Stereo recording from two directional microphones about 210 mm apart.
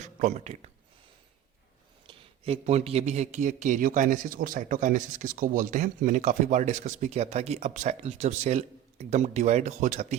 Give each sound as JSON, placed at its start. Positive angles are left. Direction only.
{"t": 0.0, "sound": "speech", "side_deg": -35}
{"t": 2.0, "sound": "a man's voice", "side_deg": -30}